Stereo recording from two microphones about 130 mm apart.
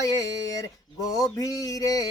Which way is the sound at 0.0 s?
25° left (ahead or behind).